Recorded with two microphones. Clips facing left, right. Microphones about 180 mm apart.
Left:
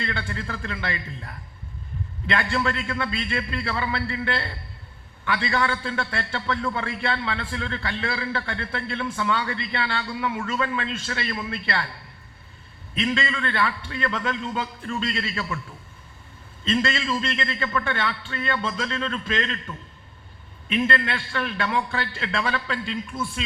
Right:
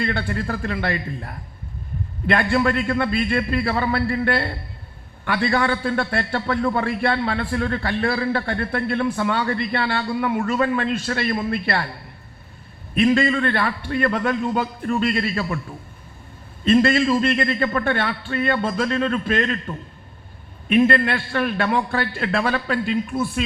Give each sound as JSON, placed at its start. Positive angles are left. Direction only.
{"t": 0.0, "sound": "a man's voice", "side_deg": -50}
{"t": 12.9, "sound": "a man's voice", "side_deg": -55}
{"t": 16.6, "sound": "a man's voice", "side_deg": -50}